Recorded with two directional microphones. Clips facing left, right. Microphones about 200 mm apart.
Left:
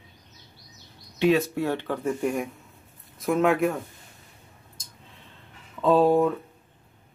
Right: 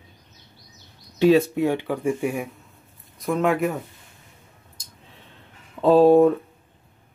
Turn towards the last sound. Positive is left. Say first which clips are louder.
# right 5 dB
turn(degrees=-35)  # may be behind; listen again after turning